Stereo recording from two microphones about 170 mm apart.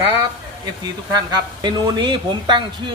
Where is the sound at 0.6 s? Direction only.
25° right (ahead or behind).